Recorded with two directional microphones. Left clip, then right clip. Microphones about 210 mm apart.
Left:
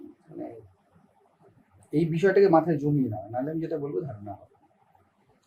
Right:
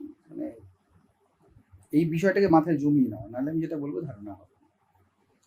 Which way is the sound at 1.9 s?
50° right (ahead or behind).